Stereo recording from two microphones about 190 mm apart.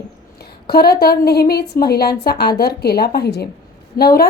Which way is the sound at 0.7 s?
55° left (ahead or behind).